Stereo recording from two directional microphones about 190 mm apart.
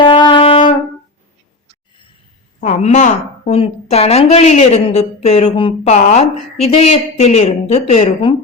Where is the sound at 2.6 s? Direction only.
40° left (ahead or behind).